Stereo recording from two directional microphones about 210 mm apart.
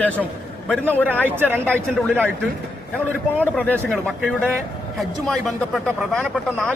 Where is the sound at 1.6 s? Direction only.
5° left (ahead or behind).